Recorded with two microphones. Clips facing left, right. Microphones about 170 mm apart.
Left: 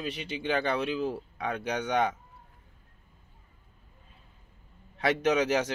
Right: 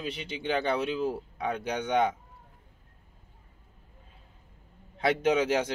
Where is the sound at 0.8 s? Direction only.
30° right (ahead or behind).